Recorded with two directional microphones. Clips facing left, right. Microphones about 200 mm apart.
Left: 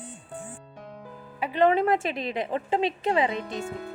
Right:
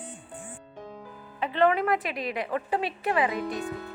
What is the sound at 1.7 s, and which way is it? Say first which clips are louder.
Speech: left 3 dB; 30° left (ahead or behind).